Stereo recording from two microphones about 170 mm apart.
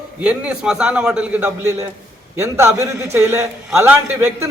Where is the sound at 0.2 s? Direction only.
5° right (ahead or behind).